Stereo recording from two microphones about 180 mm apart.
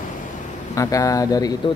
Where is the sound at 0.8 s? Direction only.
20° left (ahead or behind).